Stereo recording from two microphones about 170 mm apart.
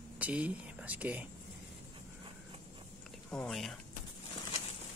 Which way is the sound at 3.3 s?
5° left (ahead or behind).